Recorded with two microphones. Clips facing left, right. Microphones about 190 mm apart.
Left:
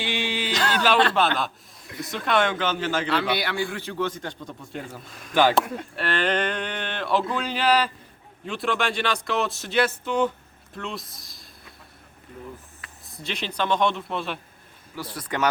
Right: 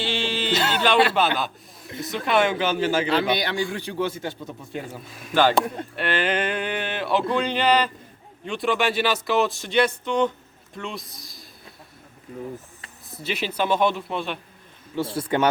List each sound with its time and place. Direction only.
0.0 s a sound: 15° left (ahead or behind)
0.9 s a man's voice: 5° right (ahead or behind)
3.1 s a man's voice: 20° right (ahead or behind); by 5.1 s centre (ahead or behind)
5.3 s speech: 15° left (ahead or behind)
5.5 s speech: centre (ahead or behind)
13.1 s speech: 5° right (ahead or behind)
14.9 s speech: 25° right (ahead or behind)